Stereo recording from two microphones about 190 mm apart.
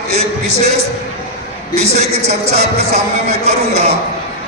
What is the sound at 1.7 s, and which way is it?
Speech, 35° right (ahead or behind).